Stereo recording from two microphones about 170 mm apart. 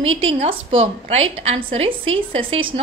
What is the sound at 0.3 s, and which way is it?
A woman's voice, 35° right (ahead or behind).